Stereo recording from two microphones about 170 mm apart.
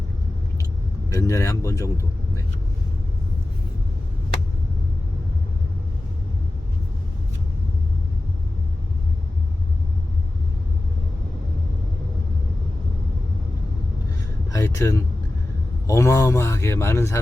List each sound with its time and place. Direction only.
1.1 s speech: 20° left (ahead or behind)
14.5 s speech: 15° left (ahead or behind)